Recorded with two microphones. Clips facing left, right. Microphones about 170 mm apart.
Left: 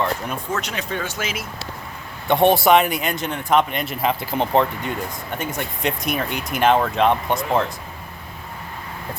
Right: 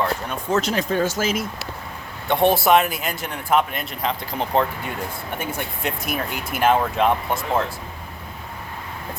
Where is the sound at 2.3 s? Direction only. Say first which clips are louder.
Left 2 dB; centre (ahead or behind).